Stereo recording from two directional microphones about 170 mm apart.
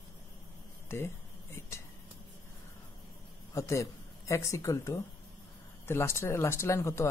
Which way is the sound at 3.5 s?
20° left (ahead or behind).